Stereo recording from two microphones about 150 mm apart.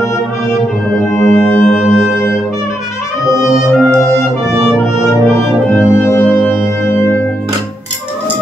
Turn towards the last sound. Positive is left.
turn(degrees=15)  # may be behind; listen again after turning